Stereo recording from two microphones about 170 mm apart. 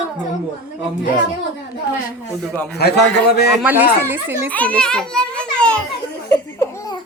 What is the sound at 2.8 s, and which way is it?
Speech, 70° left (ahead or behind).